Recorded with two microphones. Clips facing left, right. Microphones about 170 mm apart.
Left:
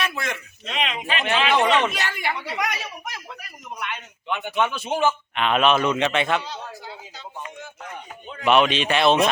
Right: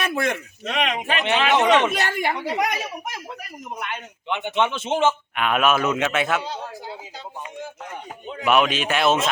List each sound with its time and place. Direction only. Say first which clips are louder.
0.0 s speech: right 5 dB; 50° right (ahead or behind)
1.5 s a man's voice: right 2 dB; 20° right (ahead or behind)
1.9 s a woman's voice: right 4 dB; 45° right (ahead or behind)
4.3 s a man's voice: right 1 dB; 20° right (ahead or behind)
5.3 s a man's voice: left 1 dB; 5° right (ahead or behind)
8.4 s a man's voice: left 1 dB; 5° right (ahead or behind)